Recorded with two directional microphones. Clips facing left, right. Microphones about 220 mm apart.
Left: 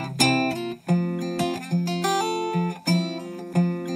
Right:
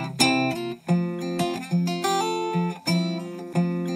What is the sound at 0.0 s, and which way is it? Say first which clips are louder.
Music: even; centre (ahead or behind).